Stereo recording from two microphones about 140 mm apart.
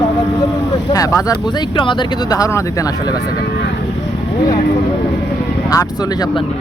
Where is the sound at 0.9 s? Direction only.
25° left (ahead or behind).